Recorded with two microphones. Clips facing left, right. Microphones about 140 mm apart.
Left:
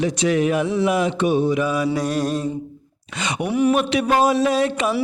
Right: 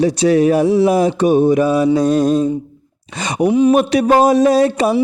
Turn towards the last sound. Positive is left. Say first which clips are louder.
# right 7 dB
turn(degrees=-40)  # may be behind; listen again after turning